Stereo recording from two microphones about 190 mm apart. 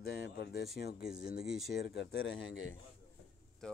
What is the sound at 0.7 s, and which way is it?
Speech, 55° left (ahead or behind).